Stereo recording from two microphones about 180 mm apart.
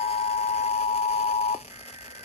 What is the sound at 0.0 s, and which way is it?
Alarm clock, 35° left (ahead or behind).